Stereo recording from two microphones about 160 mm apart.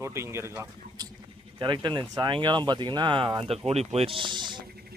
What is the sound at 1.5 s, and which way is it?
Speech, 30° right (ahead or behind).